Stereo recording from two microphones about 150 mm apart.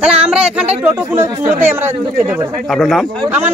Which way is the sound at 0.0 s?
5° right (ahead or behind).